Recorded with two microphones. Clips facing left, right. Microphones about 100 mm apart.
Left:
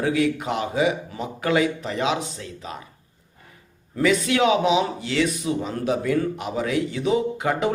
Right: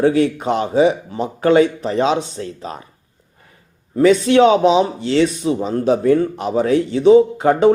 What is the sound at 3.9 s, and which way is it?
Speech, 30° right (ahead or behind).